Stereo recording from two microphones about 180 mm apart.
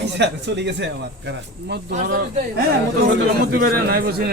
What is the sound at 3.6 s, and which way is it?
Speech, 60° right (ahead or behind).